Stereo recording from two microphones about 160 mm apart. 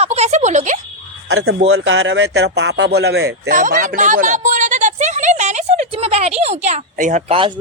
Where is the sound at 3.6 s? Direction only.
55° right (ahead or behind).